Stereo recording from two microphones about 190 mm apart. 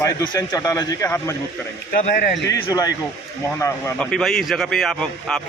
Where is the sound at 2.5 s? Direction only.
20° left (ahead or behind).